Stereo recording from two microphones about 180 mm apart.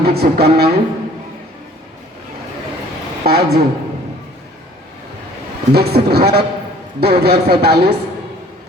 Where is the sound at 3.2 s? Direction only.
60° right (ahead or behind).